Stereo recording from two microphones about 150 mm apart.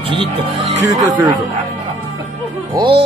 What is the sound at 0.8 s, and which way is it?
Speech, 20° right (ahead or behind).